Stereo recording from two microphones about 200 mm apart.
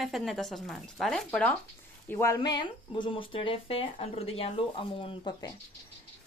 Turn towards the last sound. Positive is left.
turn(degrees=25)  # may be behind; listen again after turning